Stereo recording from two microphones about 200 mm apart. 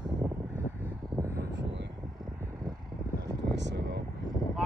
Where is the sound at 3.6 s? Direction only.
60° right (ahead or behind).